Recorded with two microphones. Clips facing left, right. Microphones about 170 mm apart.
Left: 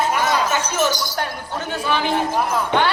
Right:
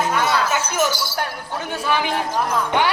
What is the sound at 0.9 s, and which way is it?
Speech, 15° left (ahead or behind).